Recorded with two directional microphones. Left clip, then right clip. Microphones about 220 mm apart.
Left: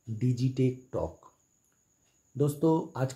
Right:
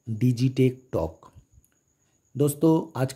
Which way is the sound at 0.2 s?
40° right (ahead or behind).